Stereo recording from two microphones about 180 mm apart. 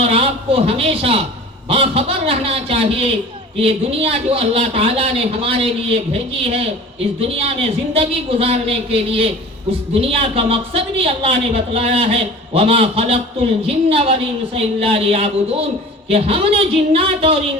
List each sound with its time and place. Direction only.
0.0 s a man's voice: 30° right (ahead or behind)